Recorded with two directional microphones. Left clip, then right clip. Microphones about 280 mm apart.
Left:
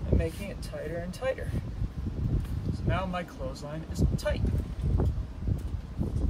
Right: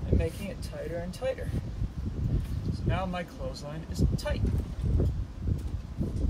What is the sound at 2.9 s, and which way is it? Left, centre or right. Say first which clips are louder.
Speech: left 1 dB; centre.